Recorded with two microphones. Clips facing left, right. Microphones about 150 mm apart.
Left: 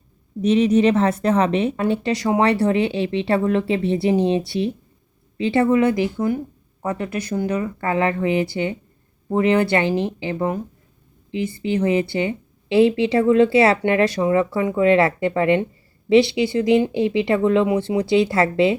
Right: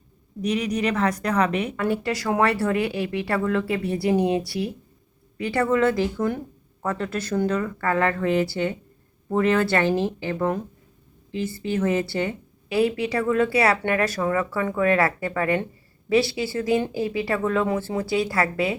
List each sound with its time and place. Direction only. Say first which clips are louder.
0.4 s a woman's voice: left 8 dB; 25° left (ahead or behind)